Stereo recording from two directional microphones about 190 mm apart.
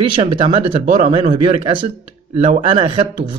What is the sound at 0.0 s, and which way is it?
Speech, 30° right (ahead or behind).